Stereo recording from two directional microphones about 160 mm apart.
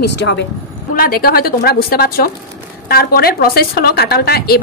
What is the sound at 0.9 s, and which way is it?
A woman's voice, 65° left (ahead or behind).